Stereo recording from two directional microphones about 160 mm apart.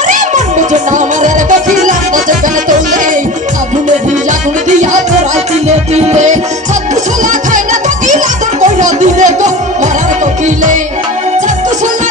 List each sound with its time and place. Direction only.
1.8 s music: 55° right (ahead or behind)
4.6 s music: 50° right (ahead or behind)
8.1 s music: 50° right (ahead or behind)